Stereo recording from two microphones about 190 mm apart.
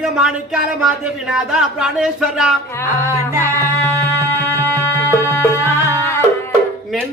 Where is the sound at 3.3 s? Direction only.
15° right (ahead or behind).